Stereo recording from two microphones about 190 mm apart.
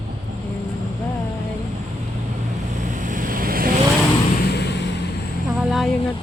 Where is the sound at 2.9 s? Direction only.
45° right (ahead or behind).